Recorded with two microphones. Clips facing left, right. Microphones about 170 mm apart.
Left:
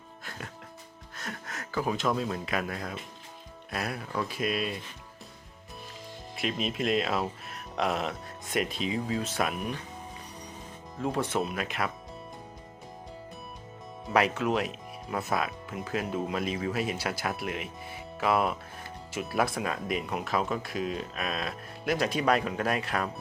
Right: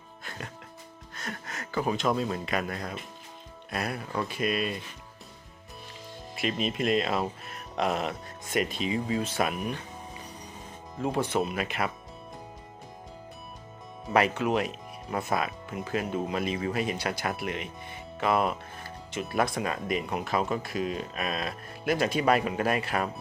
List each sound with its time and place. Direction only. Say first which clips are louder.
0.3 s music: right 2 dB; centre (ahead or behind)
1.1 s speech: right 1 dB; centre (ahead or behind)
6.3 s speech: right 2 dB; centre (ahead or behind)
11.0 s speech: right 2 dB; centre (ahead or behind)
14.1 s speech: right 1 dB; centre (ahead or behind)